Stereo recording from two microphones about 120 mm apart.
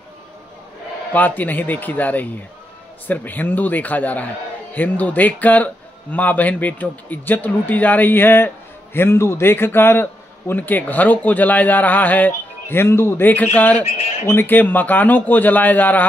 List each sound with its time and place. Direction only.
1.1 s a man's voice: 15° left (ahead or behind)